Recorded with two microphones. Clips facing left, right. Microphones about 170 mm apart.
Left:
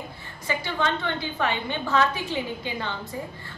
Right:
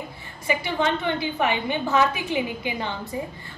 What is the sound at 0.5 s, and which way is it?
A woman's voice, 15° right (ahead or behind).